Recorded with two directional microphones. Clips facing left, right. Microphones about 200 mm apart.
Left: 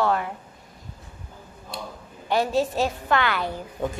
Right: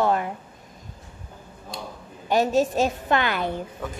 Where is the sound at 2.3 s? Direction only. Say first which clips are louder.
Right 2 dB; 20° right (ahead or behind).